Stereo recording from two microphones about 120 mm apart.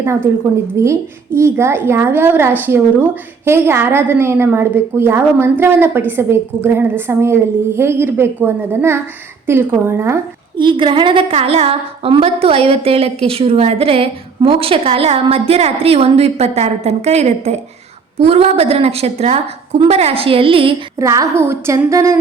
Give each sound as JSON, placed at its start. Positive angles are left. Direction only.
{"t": 0.0, "sound": "a woman's voice", "side_deg": -20}
{"t": 10.6, "sound": "a woman's voice", "side_deg": -45}
{"t": 21.0, "sound": "a woman's voice", "side_deg": -25}